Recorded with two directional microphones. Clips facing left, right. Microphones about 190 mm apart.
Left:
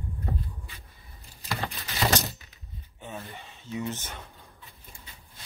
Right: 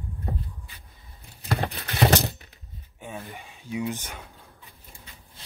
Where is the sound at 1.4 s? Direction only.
60° right (ahead or behind).